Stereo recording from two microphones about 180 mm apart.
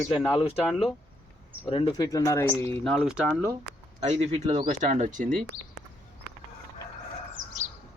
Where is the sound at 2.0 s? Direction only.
15° left (ahead or behind).